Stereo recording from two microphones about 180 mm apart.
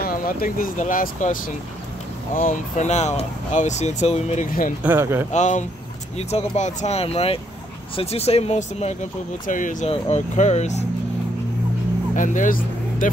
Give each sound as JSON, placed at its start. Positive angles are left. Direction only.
{"t": 0.0, "sound": "speech", "side_deg": 50}
{"t": 4.8, "sound": "speech", "side_deg": -10}
{"t": 5.3, "sound": "speech", "side_deg": 40}
{"t": 12.2, "sound": "speech", "side_deg": 45}